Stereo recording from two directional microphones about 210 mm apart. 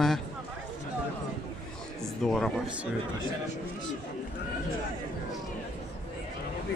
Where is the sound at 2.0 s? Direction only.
Centre (ahead or behind).